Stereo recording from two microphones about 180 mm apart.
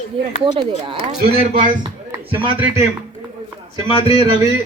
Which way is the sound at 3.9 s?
30° left (ahead or behind).